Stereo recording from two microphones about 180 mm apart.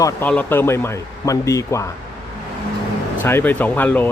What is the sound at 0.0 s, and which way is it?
Speech, 10° left (ahead or behind).